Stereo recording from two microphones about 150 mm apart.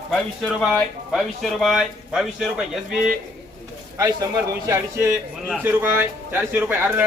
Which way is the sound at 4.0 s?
25° right (ahead or behind).